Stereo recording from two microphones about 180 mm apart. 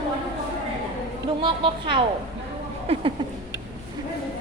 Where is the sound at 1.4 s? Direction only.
30° right (ahead or behind).